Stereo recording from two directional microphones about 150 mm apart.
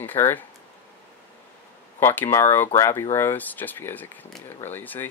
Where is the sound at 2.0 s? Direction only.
15° left (ahead or behind).